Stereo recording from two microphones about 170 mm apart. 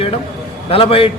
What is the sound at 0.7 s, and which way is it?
Speech, 35° left (ahead or behind).